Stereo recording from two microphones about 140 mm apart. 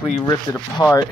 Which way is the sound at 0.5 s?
15° left (ahead or behind).